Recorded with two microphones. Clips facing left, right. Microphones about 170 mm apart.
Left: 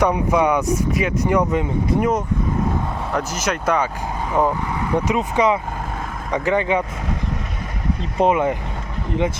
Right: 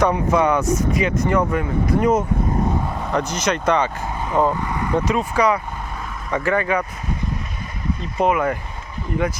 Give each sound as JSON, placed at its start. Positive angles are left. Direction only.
{"t": 0.0, "sound": "speech", "side_deg": 10}
{"t": 2.0, "sound": "speech", "side_deg": 0}
{"t": 8.2, "sound": "speech", "side_deg": 25}